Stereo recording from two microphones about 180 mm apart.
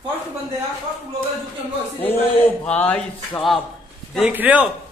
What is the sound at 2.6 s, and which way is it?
Speech, 5° left (ahead or behind).